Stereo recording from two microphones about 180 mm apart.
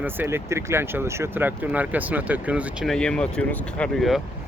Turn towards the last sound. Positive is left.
turn(degrees=0)  # may be behind; listen again after turning